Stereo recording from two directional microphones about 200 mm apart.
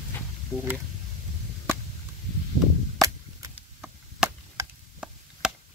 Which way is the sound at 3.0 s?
15° right (ahead or behind).